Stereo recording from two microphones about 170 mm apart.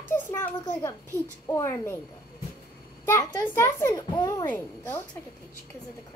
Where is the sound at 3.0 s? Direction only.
15° left (ahead or behind).